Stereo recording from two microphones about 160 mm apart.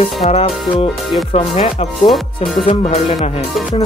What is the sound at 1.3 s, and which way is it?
Speech, 40° left (ahead or behind).